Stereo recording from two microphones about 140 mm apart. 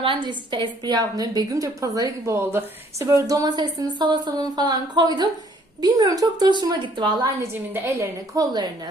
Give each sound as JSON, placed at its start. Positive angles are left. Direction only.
{"t": 0.0, "sound": "a woman's voice", "side_deg": -35}
{"t": 7.4, "sound": "a woman's voice", "side_deg": -20}